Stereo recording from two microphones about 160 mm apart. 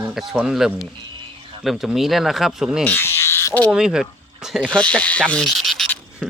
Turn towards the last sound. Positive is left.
turn(degrees=0)  # may be behind; listen again after turning